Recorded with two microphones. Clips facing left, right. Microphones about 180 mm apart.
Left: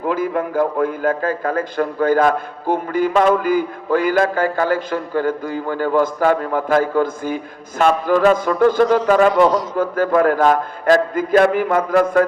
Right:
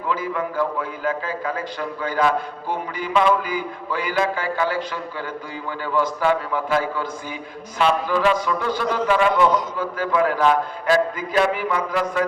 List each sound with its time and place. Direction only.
0.0 s a man's voice: 50° left (ahead or behind)